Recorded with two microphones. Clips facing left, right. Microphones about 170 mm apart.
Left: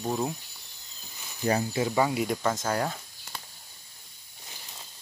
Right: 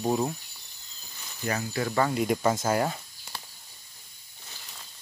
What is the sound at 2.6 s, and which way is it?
Insect, 5° right (ahead or behind).